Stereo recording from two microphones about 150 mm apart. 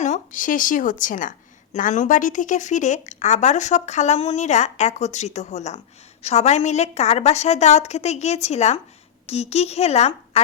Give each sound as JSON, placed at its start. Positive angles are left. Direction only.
{"t": 0.0, "sound": "a woman's voice", "side_deg": 55}